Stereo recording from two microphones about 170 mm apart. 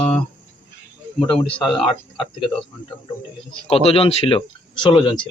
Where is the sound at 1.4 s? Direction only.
30° left (ahead or behind).